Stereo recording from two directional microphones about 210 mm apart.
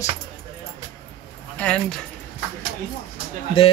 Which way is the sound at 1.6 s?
5° left (ahead or behind).